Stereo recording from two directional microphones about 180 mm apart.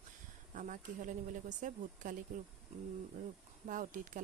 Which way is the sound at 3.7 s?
45° right (ahead or behind).